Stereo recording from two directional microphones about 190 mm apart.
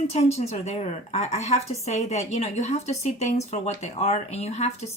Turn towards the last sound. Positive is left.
turn(degrees=35)  # may be behind; listen again after turning